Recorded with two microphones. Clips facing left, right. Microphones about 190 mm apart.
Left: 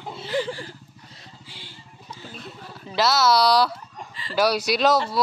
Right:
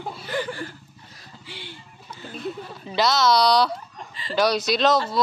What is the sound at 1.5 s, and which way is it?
Speech, 65° right (ahead or behind).